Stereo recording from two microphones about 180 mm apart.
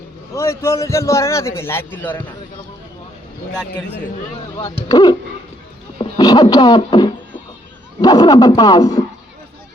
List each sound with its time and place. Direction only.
0.3 s a man's voice: 15° left (ahead or behind)
4.5 s speech: 20° left (ahead or behind)